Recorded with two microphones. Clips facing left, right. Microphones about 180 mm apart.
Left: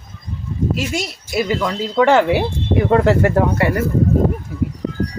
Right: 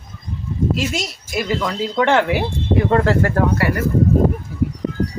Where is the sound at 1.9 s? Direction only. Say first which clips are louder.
Left 4 dB; 10° left (ahead or behind).